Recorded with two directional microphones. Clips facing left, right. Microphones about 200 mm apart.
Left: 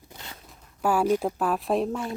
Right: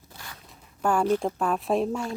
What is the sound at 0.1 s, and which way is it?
Zipper, 20° left (ahead or behind).